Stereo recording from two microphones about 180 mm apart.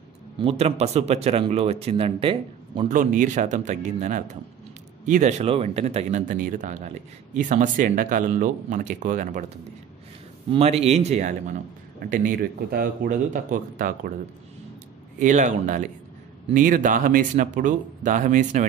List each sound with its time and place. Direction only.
0.4 s speech: 35° right (ahead or behind)
2.9 s speech: 45° right (ahead or behind)
10.5 s speech: 35° right (ahead or behind)
12.1 s speech: 50° right (ahead or behind)
15.1 s speech: 45° right (ahead or behind)